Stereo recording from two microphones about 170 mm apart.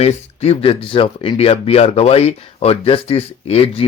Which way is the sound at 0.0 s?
40° left (ahead or behind).